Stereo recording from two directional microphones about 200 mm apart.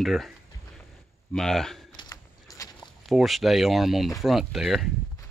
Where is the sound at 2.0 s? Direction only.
20° left (ahead or behind).